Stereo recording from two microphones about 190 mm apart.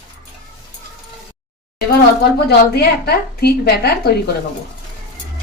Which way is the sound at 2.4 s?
60° left (ahead or behind).